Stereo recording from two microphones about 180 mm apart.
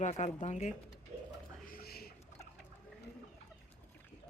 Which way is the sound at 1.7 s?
55° left (ahead or behind).